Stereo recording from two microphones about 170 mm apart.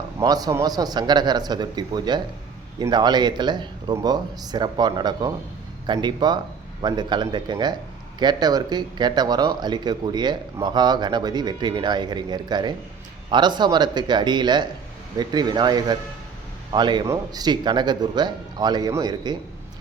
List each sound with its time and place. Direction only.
0.2 s speech: 20° right (ahead or behind)